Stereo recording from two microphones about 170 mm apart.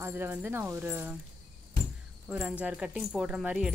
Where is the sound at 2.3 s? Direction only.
5° right (ahead or behind).